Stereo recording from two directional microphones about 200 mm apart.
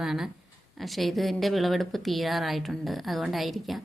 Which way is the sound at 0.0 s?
Centre (ahead or behind).